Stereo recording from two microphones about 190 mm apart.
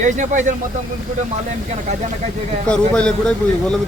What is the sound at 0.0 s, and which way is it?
Speech, 40° right (ahead or behind).